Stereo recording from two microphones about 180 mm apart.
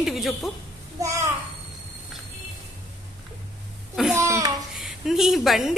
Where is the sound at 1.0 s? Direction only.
15° right (ahead or behind).